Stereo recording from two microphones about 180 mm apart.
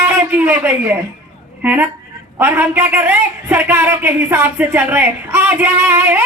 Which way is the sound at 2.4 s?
10° right (ahead or behind).